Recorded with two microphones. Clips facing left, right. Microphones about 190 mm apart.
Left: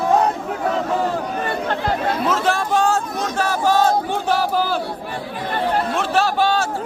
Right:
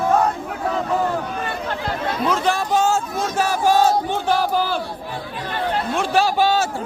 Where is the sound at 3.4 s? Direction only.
10° right (ahead or behind).